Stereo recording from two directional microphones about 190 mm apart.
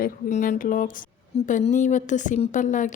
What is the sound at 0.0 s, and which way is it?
A woman's voice, 45° left (ahead or behind).